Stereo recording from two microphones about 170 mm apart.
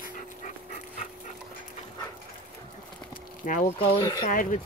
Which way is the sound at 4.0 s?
25° left (ahead or behind).